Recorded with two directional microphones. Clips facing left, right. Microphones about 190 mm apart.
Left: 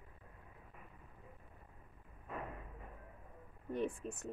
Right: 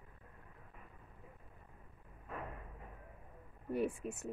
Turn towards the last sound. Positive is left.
turn(degrees=-10)  # may be behind; listen again after turning